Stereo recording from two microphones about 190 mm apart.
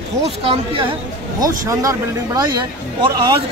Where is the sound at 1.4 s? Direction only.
15° right (ahead or behind).